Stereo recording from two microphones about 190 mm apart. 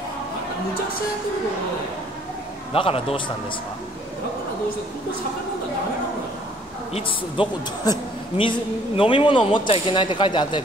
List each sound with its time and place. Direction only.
2.7 s a woman's voice: 30° left (ahead or behind)
6.9 s a woman's voice: 30° left (ahead or behind)